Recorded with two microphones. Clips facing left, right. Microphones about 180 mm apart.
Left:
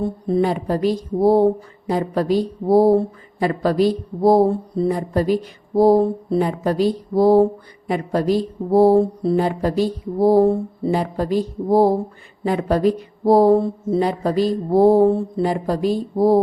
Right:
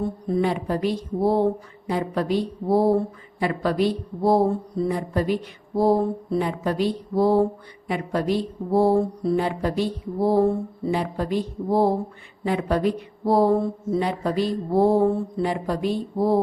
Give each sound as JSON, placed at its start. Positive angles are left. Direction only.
{"t": 0.3, "sound": "a woman's voice", "side_deg": 35}